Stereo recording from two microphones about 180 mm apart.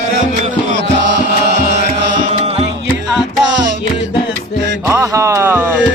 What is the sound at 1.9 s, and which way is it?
Music, 35° right (ahead or behind).